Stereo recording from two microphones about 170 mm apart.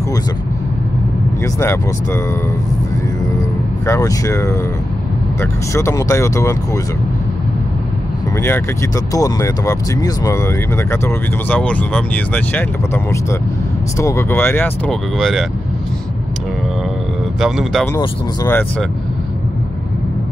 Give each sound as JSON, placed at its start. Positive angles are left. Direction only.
{"t": 1.4, "sound": "speech", "side_deg": 15}
{"t": 3.8, "sound": "speech", "side_deg": 20}
{"t": 8.4, "sound": "speech", "side_deg": 15}
{"t": 15.1, "sound": "a man's voice", "side_deg": 0}
{"t": 17.4, "sound": "a man's voice", "side_deg": 0}
{"t": 17.9, "sound": "speech", "side_deg": 15}